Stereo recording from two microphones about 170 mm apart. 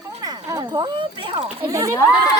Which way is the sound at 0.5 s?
25° right (ahead or behind).